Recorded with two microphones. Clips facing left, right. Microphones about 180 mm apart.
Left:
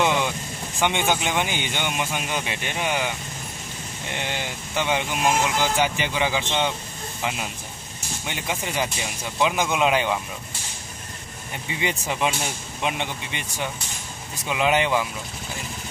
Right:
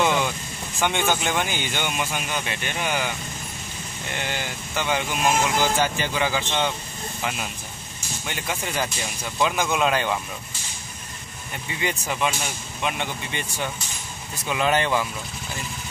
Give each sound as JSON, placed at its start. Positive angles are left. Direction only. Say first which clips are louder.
{"t": 0.7, "sound": "speech", "louder": "even", "side_deg": 15}
{"t": 4.1, "sound": "speech", "louder": "even", "side_deg": 20}
{"t": 8.3, "sound": "speech", "louder": "even", "side_deg": 20}
{"t": 11.8, "sound": "speech", "louder": "left 1 dB", "side_deg": 20}